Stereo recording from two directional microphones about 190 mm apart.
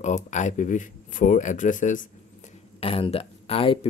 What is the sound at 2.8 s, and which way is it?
Speech, 30° left (ahead or behind).